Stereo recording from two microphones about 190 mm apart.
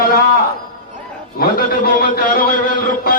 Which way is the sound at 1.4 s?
50° left (ahead or behind).